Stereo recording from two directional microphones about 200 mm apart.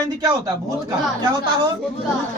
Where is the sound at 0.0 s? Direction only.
20° right (ahead or behind).